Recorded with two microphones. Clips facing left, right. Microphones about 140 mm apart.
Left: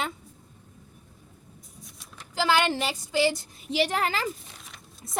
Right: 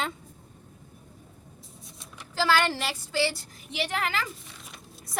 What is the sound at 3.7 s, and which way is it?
Speech, 35° left (ahead or behind).